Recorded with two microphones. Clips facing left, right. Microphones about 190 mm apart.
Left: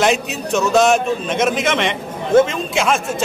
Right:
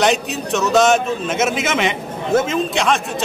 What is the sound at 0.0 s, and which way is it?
A man's voice, centre (ahead or behind).